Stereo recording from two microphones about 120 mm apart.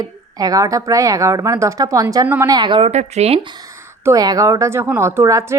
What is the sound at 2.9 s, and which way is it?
Speech, 65° right (ahead or behind).